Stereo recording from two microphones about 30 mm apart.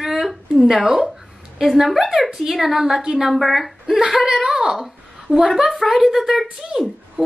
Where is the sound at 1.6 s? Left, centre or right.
Centre.